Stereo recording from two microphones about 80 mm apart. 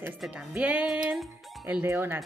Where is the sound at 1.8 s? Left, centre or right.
Right.